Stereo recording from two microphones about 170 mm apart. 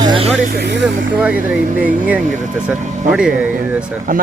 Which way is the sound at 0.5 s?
85° right.